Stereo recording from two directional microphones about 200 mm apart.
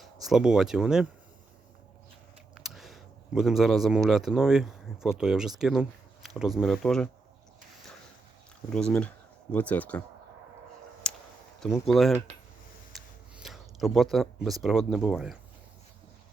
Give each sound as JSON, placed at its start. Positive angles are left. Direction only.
{"t": 0.0, "sound": "speech", "side_deg": 0}
{"t": 2.6, "sound": "speech", "side_deg": 0}
{"t": 8.7, "sound": "speech", "side_deg": 5}
{"t": 11.1, "sound": "a sound", "side_deg": 5}
{"t": 11.6, "sound": "speech", "side_deg": 0}
{"t": 12.9, "sound": "a sound", "side_deg": 0}
{"t": 14.6, "sound": "speech", "side_deg": 0}